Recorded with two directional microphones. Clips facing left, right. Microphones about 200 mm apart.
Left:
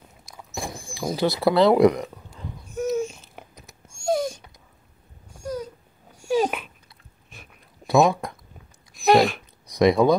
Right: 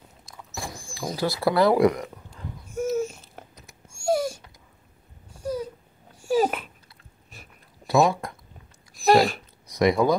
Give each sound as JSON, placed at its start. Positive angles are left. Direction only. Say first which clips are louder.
{"t": 0.6, "sound": "rodents", "louder": "left 3 dB", "side_deg": 25}
{"t": 1.1, "sound": "speech", "louder": "left 3 dB", "side_deg": 20}
{"t": 2.7, "sound": "babbling", "louder": "left 1 dB", "side_deg": -5}
{"t": 3.9, "sound": "dog", "louder": "even", "side_deg": -5}
{"t": 5.4, "sound": "dog", "louder": "right 1 dB", "side_deg": -5}
{"t": 7.8, "sound": "a sound", "louder": "left 2 dB", "side_deg": 20}
{"t": 9.0, "sound": "a sound", "louder": "left 1 dB", "side_deg": 0}
{"t": 9.7, "sound": "speech", "louder": "left 3 dB", "side_deg": 20}